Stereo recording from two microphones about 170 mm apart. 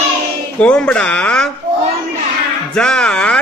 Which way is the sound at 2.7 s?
5° left (ahead or behind).